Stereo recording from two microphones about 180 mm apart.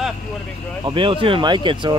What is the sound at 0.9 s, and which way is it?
Speech, 30° right (ahead or behind).